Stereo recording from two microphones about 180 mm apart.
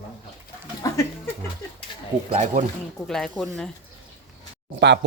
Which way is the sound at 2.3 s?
40° right (ahead or behind).